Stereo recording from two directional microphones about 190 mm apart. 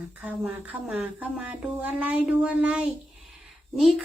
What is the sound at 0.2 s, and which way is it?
A child's voice, 5° right (ahead or behind).